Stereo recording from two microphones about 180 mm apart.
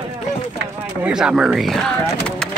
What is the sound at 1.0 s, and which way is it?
Speech, 5° right (ahead or behind).